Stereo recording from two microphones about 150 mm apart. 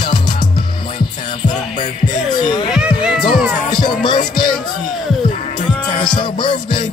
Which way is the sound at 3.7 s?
30° left (ahead or behind).